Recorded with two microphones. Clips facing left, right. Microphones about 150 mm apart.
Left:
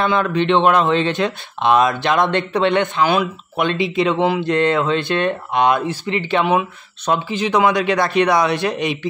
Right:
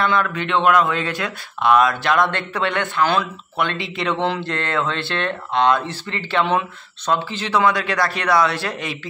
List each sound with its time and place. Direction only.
0.0 s a man's voice: 20° left (ahead or behind)